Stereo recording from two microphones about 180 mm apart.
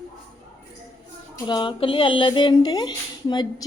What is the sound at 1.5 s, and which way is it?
Speech, 25° left (ahead or behind).